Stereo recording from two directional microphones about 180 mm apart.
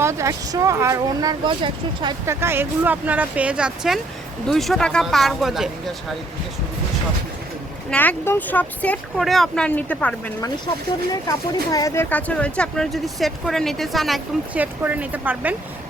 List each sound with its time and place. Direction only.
0.0 s speech: 15° right (ahead or behind)
2.2 s speech: 15° right (ahead or behind)
7.9 s speech: 10° left (ahead or behind)
11.1 s speech: 20° left (ahead or behind); by 15.5 s 10° right (ahead or behind)